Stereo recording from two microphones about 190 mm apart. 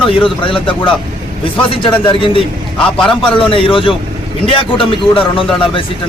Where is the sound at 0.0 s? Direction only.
25° left (ahead or behind).